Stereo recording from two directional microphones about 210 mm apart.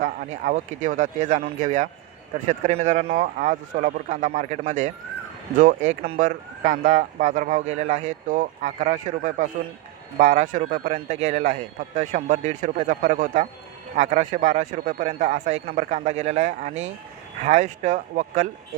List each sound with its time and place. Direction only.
0.0 s speech: 40° right (ahead or behind)